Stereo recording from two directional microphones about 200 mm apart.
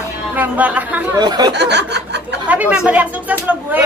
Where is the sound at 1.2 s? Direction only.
20° right (ahead or behind).